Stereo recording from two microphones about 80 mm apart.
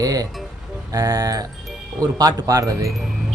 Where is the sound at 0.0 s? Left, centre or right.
Right.